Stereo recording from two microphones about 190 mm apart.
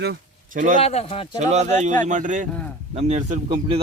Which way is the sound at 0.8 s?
30° left (ahead or behind).